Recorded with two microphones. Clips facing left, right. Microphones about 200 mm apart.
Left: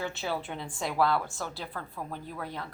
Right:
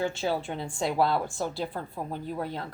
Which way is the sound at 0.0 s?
30° right (ahead or behind).